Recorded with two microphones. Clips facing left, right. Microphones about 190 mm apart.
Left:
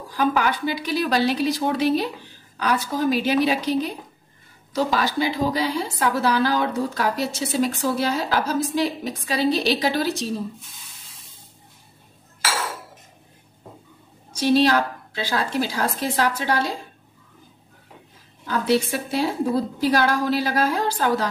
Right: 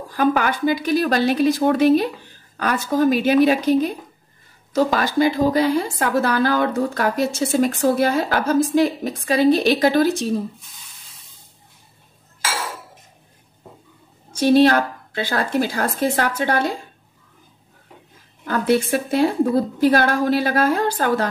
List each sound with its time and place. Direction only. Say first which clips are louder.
0.1 s a woman's voice: right 3 dB; 50° right (ahead or behind)
14.3 s a woman's voice: right 4 dB; 50° right (ahead or behind)
18.4 s a woman's voice: right 2 dB; 55° right (ahead or behind)